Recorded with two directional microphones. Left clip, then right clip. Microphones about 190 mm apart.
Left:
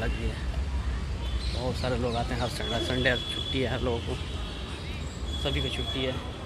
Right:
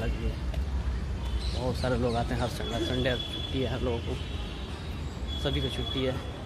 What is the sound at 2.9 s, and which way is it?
Speech, 10° right (ahead or behind).